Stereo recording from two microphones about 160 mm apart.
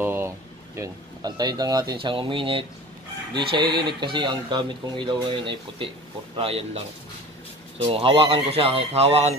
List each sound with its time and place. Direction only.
0.0 s boiling: 15° right (ahead or behind)
0.7 s speech: 20° right (ahead or behind)
3.8 s speech: 30° right (ahead or behind)
7.8 s speech: 35° right (ahead or behind)